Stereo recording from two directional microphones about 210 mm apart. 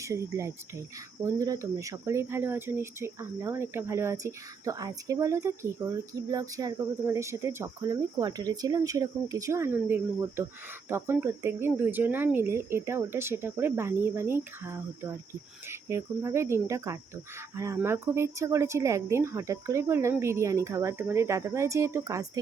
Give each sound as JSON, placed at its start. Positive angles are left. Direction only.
{"t": 0.0, "sound": "speech", "side_deg": -15}